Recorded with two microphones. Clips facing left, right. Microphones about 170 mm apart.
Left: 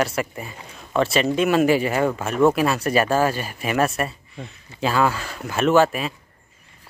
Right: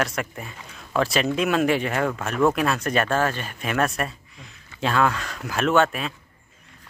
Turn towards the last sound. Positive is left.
turn(degrees=5)  # may be behind; listen again after turning